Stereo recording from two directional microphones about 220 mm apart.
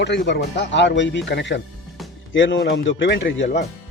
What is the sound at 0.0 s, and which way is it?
Speech, 50° left (ahead or behind).